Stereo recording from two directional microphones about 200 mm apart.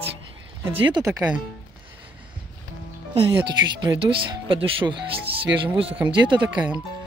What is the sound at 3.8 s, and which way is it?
Speech, 25° right (ahead or behind).